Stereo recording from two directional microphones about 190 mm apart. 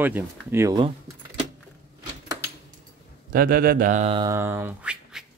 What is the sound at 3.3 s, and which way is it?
Speech, 50° right (ahead or behind).